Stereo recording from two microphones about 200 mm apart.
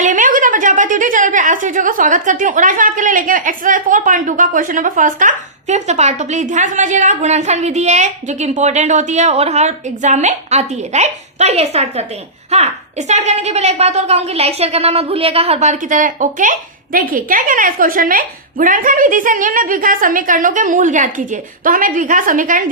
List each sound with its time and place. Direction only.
0.0 s a woman's voice: 40° right (ahead or behind)